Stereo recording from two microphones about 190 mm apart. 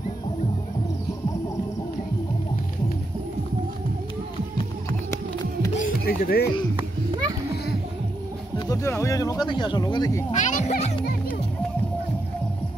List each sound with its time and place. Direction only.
5.1 s music: 15° left (ahead or behind)
5.8 s music: 50° left (ahead or behind)
8.5 s speech: 15° left (ahead or behind)
10.3 s a child's voice: 40° left (ahead or behind)